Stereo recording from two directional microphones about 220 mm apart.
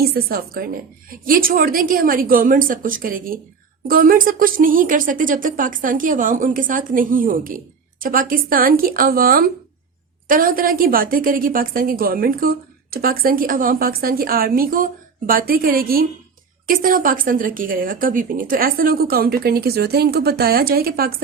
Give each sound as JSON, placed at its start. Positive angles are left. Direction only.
{"t": 0.0, "sound": "speech", "side_deg": -45}